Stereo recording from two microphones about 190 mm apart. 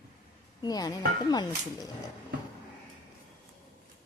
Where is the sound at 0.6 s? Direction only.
20° left (ahead or behind).